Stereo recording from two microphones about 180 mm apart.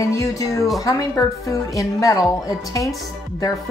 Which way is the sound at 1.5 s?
20° left (ahead or behind).